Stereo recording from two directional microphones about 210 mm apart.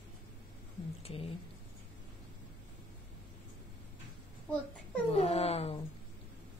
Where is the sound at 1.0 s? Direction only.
25° left (ahead or behind).